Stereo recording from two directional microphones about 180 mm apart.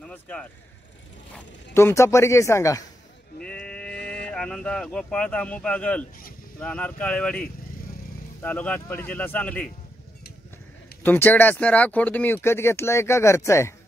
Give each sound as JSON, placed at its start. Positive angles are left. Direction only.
{"t": 0.0, "sound": "vehicle", "side_deg": 5}
{"t": 1.7, "sound": "speech", "side_deg": 15}
{"t": 3.4, "sound": "speech", "side_deg": 5}
{"t": 11.0, "sound": "speech", "side_deg": 10}